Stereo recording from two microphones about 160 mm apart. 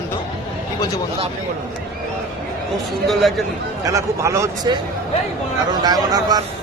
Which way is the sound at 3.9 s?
20° right (ahead or behind).